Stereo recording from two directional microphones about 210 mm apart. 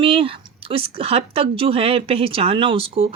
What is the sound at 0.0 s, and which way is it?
Speech, 25° right (ahead or behind).